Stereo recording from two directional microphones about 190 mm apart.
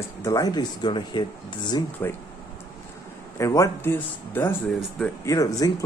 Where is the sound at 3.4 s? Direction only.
15° left (ahead or behind).